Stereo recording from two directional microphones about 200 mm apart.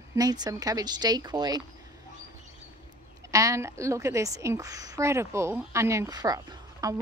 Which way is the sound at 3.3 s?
15° right (ahead or behind).